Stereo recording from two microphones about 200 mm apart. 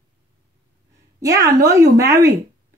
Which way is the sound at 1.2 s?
15° right (ahead or behind).